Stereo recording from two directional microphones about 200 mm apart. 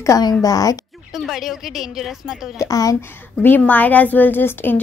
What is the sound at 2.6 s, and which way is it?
A woman's voice, 15° left (ahead or behind).